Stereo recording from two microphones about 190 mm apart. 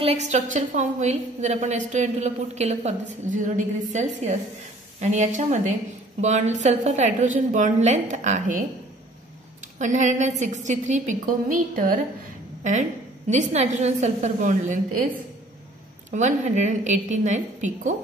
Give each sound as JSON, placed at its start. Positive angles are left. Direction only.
{"t": 0.3, "sound": "a woman's voice", "side_deg": -40}
{"t": 9.8, "sound": "a woman's voice", "side_deg": -40}
{"t": 13.3, "sound": "a woman's voice", "side_deg": -35}
{"t": 16.1, "sound": "a woman's voice", "side_deg": -40}